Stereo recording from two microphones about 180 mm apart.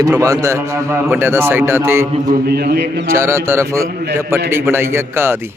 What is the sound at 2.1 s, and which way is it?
Speech, 45° right (ahead or behind).